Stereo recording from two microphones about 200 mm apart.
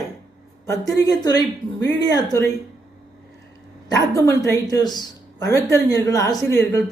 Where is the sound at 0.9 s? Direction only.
20° left (ahead or behind).